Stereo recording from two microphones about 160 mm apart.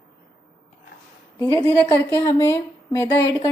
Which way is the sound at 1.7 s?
20° left (ahead or behind).